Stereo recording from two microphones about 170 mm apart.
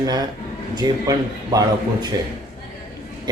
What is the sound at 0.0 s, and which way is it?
Speech, 25° right (ahead or behind).